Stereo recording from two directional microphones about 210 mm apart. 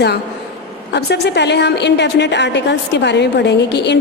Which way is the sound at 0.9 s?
55° left (ahead or behind).